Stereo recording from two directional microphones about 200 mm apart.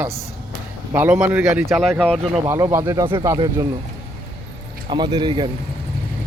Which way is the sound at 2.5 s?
15° right (ahead or behind).